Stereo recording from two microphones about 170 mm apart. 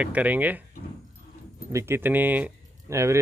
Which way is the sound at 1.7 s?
15° right (ahead or behind).